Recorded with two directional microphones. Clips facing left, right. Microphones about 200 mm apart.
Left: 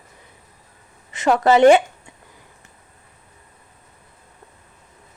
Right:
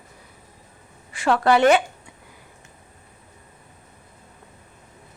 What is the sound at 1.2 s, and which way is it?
Speech, 20° left (ahead or behind).